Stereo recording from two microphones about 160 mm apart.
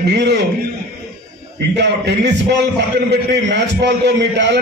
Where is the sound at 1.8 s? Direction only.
90° right.